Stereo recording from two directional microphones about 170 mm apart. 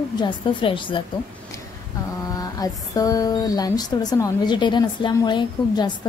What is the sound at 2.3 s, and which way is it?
Speech, 20° left (ahead or behind).